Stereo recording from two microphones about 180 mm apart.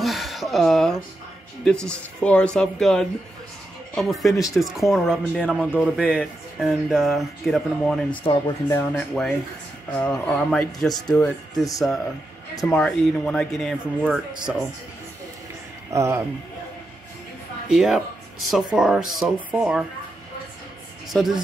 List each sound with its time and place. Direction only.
0.0 s a sound: centre (ahead or behind)
1.6 s speech: 5° left (ahead or behind)
8.3 s speech: 15° left (ahead or behind)
8.9 s speech: centre (ahead or behind)
12.6 s speech: 5° left (ahead or behind)
15.9 s speech: 15° right (ahead or behind)
17.6 s speech: 5° right (ahead or behind)
21.1 s speech: centre (ahead or behind)